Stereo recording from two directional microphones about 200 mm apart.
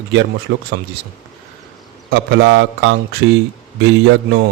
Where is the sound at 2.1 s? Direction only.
60° right (ahead or behind).